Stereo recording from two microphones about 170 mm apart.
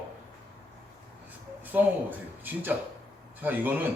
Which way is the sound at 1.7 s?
10° right (ahead or behind).